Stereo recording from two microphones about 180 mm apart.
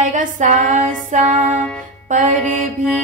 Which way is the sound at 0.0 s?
45° right (ahead or behind).